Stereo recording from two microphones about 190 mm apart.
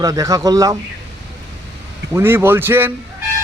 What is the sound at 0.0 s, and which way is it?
Speech, 20° right (ahead or behind).